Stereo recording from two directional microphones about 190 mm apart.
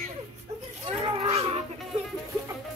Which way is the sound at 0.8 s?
30° right (ahead or behind).